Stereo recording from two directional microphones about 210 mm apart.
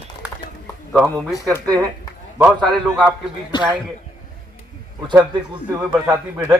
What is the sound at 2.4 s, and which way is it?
Speech, 5° right (ahead or behind).